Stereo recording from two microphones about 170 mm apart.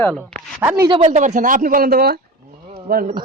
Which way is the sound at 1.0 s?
45° right (ahead or behind).